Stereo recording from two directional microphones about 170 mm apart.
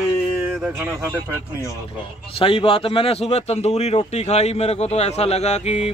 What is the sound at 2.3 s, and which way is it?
Speech, 35° left (ahead or behind).